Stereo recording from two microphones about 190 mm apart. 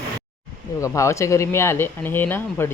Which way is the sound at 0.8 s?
15° left (ahead or behind).